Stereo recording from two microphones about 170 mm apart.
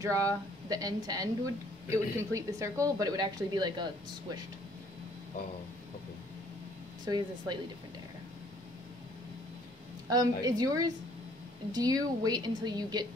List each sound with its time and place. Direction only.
0.0 s a woman's voice: 20° right (ahead or behind)
7.1 s a woman's voice: 25° right (ahead or behind)
10.0 s a woman's voice: 20° right (ahead or behind)